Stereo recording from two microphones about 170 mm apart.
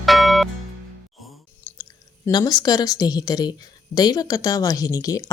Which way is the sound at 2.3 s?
20° left (ahead or behind).